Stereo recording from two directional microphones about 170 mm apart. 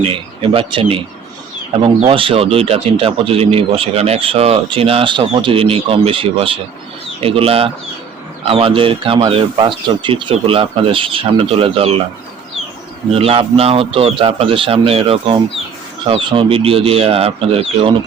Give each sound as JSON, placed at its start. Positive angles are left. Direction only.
{"t": 0.0, "sound": "speech", "side_deg": -30}
{"t": 13.1, "sound": "speech", "side_deg": -35}